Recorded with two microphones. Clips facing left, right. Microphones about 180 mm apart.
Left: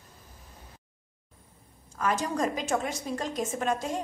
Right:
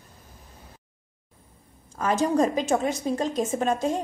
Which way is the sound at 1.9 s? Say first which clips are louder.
Right 6 dB; 30° right (ahead or behind).